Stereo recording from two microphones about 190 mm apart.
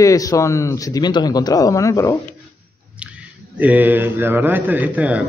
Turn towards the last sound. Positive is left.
turn(degrees=-10)  # may be behind; listen again after turning